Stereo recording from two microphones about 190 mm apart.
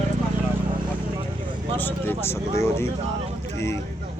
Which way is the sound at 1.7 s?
10° left (ahead or behind).